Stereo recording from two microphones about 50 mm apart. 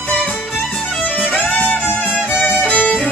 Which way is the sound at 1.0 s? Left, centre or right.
Left.